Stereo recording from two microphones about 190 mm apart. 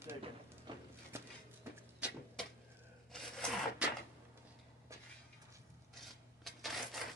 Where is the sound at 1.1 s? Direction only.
15° right (ahead or behind).